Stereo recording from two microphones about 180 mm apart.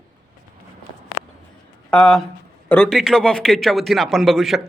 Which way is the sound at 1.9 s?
5° left (ahead or behind).